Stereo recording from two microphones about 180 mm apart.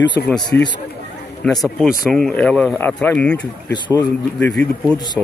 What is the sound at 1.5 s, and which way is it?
A man's voice, centre (ahead or behind).